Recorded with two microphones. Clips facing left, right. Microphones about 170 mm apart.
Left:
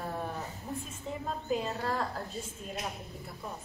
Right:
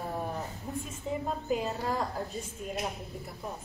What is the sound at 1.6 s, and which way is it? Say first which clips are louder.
Speech: right 1 dB; 10° right (ahead or behind).